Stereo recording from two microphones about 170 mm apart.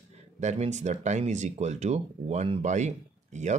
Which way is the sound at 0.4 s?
40° right (ahead or behind).